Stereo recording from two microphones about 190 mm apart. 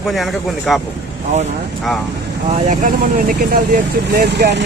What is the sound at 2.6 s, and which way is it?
Speech, 45° right (ahead or behind).